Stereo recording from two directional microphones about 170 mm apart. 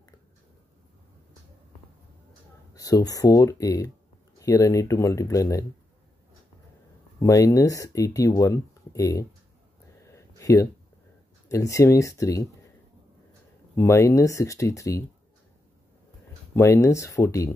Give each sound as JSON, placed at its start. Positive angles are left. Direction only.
{"t": 2.7, "sound": "speech", "side_deg": 20}
{"t": 7.2, "sound": "speech", "side_deg": 20}
{"t": 10.1, "sound": "a sound", "side_deg": 20}
{"t": 11.4, "sound": "speech", "side_deg": 20}
{"t": 13.7, "sound": "speech", "side_deg": 15}
{"t": 16.5, "sound": "speech", "side_deg": 15}